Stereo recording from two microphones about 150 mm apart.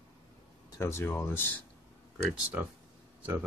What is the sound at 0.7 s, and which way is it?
Speech, 15° left (ahead or behind).